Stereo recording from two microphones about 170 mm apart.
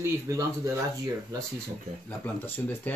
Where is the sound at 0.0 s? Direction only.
20° right (ahead or behind).